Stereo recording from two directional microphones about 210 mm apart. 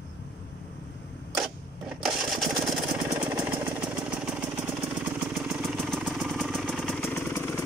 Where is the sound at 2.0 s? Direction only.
Centre (ahead or behind).